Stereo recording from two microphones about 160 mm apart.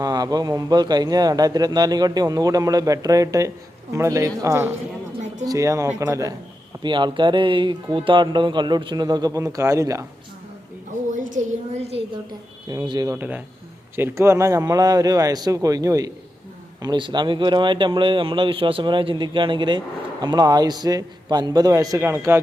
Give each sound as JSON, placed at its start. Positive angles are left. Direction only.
{"t": 0.0, "sound": "a man's voice", "side_deg": -25}
{"t": 11.1, "sound": "a sound", "side_deg": -50}
{"t": 12.6, "sound": "speech", "side_deg": -25}
{"t": 13.1, "sound": "a man's voice", "side_deg": -10}